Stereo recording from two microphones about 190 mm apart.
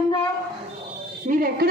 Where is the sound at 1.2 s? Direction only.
45° right (ahead or behind).